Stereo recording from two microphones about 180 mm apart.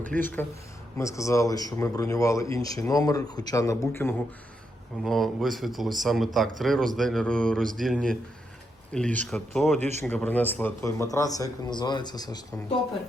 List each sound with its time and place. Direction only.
0.2 s speech: 10° left (ahead or behind)
5.0 s speech: centre (ahead or behind)
9.7 s speech: 40° right (ahead or behind)
10.0 s speech: 10° left (ahead or behind)